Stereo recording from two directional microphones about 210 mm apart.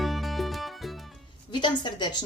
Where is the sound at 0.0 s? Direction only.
Centre (ahead or behind).